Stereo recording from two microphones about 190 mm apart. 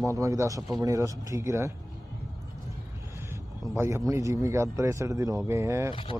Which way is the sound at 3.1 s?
15° right (ahead or behind).